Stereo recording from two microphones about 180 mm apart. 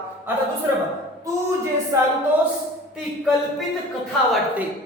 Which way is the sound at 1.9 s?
15° right (ahead or behind).